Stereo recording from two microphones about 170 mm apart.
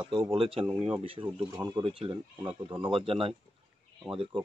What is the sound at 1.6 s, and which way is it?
Speech, 25° right (ahead or behind).